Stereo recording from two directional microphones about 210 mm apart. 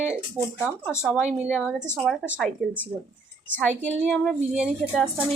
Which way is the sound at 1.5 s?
Centre (ahead or behind).